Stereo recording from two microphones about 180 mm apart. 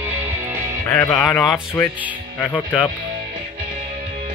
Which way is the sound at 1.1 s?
5° left (ahead or behind).